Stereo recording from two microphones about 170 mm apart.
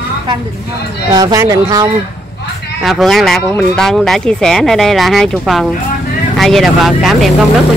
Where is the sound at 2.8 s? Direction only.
Centre (ahead or behind).